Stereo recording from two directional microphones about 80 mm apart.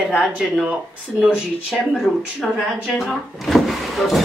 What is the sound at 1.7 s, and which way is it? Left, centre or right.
Speech, centre.